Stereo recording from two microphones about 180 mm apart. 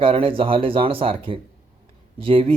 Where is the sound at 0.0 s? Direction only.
30° right (ahead or behind).